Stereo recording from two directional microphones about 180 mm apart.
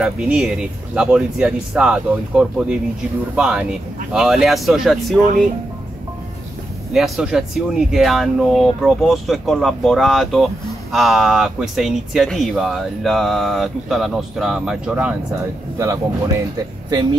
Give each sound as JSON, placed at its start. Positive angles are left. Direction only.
{"t": 0.0, "sound": "speech", "side_deg": -5}
{"t": 6.9, "sound": "speech", "side_deg": 0}